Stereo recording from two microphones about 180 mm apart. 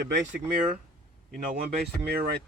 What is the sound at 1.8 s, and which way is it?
Speech, 55° right (ahead or behind).